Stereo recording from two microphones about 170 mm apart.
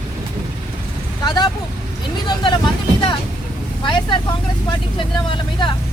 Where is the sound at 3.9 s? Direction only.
30° left (ahead or behind).